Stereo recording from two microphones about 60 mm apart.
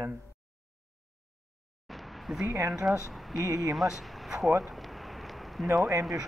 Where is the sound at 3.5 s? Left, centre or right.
Centre.